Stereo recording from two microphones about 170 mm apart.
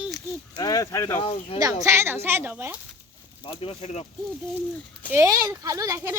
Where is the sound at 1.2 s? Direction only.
35° left (ahead or behind).